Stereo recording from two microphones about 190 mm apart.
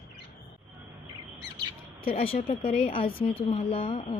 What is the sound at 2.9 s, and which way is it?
A woman's voice, 30° left (ahead or behind).